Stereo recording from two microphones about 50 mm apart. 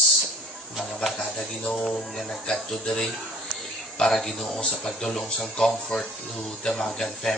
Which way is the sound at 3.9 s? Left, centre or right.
Centre.